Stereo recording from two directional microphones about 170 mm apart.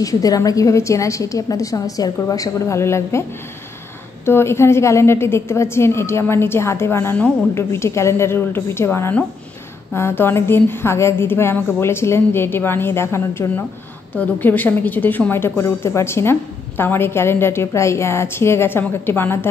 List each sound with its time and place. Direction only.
0.0 s a woman's voice: 20° left (ahead or behind)
4.3 s a woman's voice: 15° left (ahead or behind)